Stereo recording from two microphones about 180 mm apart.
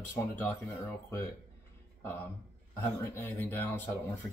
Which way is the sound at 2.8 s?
10° left (ahead or behind).